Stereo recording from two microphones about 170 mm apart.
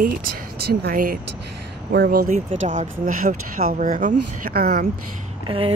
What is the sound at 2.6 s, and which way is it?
Speech, 50° right (ahead or behind).